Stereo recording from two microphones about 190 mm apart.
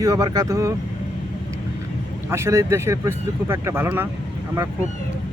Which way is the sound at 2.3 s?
15° right (ahead or behind).